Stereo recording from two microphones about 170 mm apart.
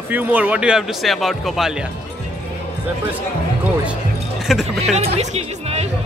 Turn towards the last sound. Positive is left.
turn(degrees=-40)  # may be behind; listen again after turning